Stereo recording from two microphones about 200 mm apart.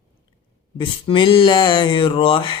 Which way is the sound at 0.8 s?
25° left (ahead or behind).